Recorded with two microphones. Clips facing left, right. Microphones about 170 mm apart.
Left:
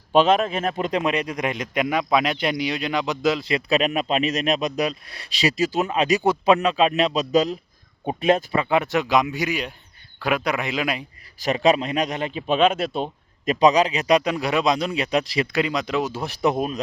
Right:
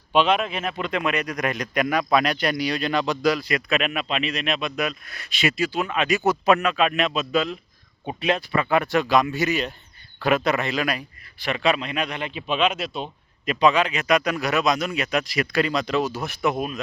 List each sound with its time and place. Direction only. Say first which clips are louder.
0.1 s speech: left 3 dB; 40° left (ahead or behind)
8.7 s a man's voice: even; 20° left (ahead or behind)
11.3 s speech: left 4 dB; 40° left (ahead or behind)
15.5 s speech: right 2 dB; 20° left (ahead or behind)
16.2 s speech: left 2 dB; 35° left (ahead or behind)